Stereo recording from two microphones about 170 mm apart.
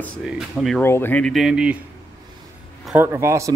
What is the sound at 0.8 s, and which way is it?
Speech, 15° left (ahead or behind).